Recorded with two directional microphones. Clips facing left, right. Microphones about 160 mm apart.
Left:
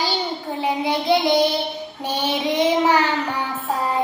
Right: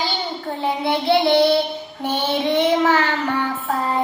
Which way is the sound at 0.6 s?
15° left (ahead or behind).